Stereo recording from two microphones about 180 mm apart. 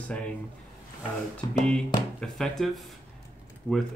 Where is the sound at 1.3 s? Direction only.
5° left (ahead or behind).